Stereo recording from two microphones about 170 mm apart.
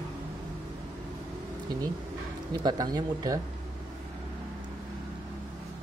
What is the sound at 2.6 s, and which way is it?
Speech, 25° right (ahead or behind).